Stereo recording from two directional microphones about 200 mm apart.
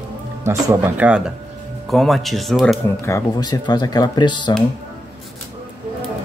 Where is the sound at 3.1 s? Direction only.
15° left (ahead or behind).